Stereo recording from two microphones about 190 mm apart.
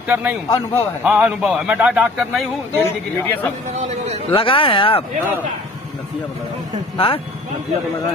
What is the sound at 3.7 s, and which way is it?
Speech, 35° right (ahead or behind).